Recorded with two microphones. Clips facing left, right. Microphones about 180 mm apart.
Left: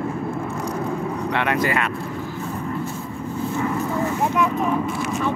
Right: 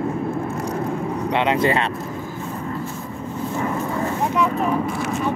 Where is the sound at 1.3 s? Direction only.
20° right (ahead or behind).